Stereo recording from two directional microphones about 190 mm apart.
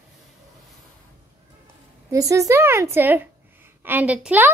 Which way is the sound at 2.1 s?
15° right (ahead or behind).